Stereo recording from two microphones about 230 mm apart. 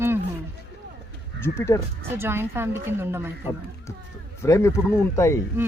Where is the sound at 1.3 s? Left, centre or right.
Centre.